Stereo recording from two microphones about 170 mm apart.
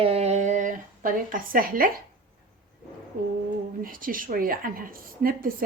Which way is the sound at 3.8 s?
55° right (ahead or behind).